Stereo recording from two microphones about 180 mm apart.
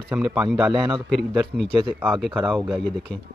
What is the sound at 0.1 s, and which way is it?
Speech, 5° right (ahead or behind).